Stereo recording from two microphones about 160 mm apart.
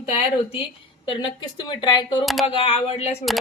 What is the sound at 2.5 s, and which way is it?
Speech, 40° left (ahead or behind).